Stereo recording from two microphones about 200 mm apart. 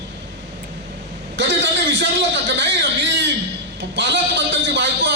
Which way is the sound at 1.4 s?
60° right (ahead or behind).